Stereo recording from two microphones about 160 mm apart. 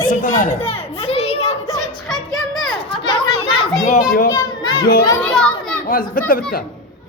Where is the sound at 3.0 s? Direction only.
30° left (ahead or behind).